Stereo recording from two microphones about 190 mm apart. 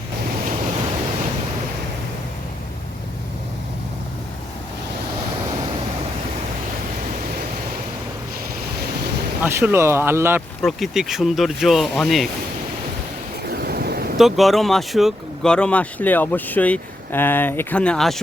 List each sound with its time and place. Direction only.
9.4 s speech: 10° right (ahead or behind)
10.6 s speech: centre (ahead or behind)
13.5 s waves: 55° right (ahead or behind)
14.2 s speech: centre (ahead or behind)